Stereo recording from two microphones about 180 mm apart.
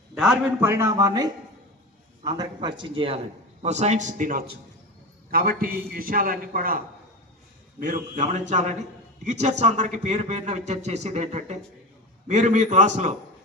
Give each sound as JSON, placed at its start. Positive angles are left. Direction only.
{"t": 0.1, "sound": "a man's voice", "side_deg": -5}
{"t": 3.6, "sound": "a man's voice", "side_deg": -40}